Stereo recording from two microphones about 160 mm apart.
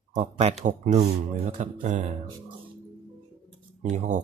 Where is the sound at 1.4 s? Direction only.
50° right (ahead or behind).